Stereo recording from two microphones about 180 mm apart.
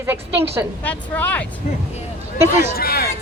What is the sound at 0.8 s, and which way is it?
Speech, 10° left (ahead or behind).